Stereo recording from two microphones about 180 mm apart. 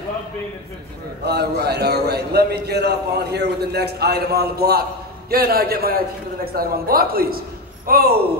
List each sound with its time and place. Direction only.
1.2 s a man's voice: 65° right (ahead or behind)